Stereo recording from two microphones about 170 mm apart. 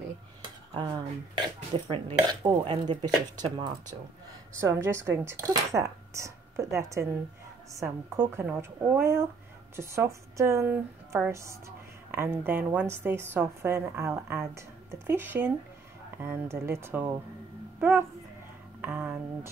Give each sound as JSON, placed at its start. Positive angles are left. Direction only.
{"t": 0.7, "sound": "speech", "side_deg": -25}
{"t": 4.6, "sound": "a woman's voice", "side_deg": -15}